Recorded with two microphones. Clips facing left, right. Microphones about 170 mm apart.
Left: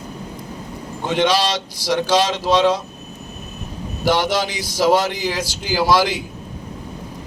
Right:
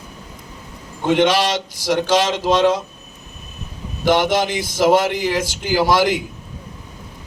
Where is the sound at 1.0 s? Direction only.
50° right (ahead or behind).